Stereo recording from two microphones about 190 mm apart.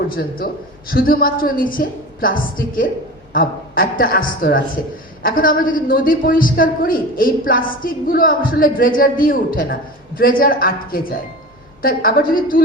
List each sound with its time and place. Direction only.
0.2 s a woman's voice: 50° left (ahead or behind)